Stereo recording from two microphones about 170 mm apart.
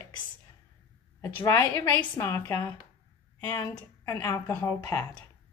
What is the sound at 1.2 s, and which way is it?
A woman's voice, 15° left (ahead or behind).